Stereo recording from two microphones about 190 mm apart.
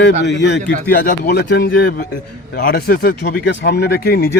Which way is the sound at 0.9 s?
55° left (ahead or behind).